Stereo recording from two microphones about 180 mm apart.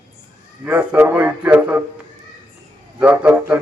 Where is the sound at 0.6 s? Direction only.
10° right (ahead or behind).